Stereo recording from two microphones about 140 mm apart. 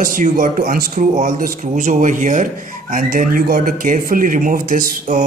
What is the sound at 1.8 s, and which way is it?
Speech, 65° right (ahead or behind).